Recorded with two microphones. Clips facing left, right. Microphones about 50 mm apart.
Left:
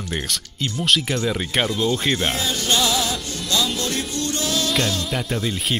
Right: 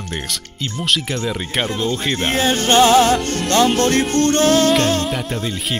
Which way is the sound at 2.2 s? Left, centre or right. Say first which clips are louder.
Right 6 dB; right.